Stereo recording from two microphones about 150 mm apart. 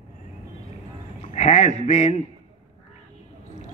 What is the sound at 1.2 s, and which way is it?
A man's voice, 50° left (ahead or behind).